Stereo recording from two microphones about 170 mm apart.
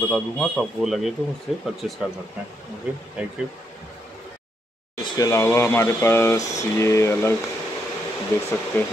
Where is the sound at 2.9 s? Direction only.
5° right (ahead or behind).